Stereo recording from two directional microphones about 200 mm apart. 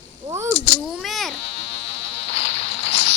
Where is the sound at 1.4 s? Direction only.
65° left (ahead or behind).